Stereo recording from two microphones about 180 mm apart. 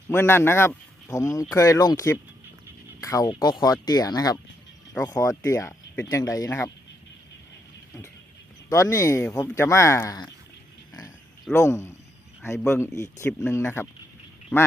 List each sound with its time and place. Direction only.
0.1 s speech: 15° left (ahead or behind)
8.7 s speech: 15° left (ahead or behind)
11.5 s speech: 15° left (ahead or behind)